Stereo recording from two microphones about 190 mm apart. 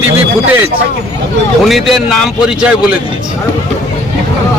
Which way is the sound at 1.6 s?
Centre (ahead or behind).